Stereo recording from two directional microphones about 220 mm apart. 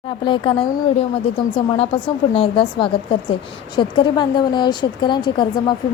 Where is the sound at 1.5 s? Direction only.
25° left (ahead or behind).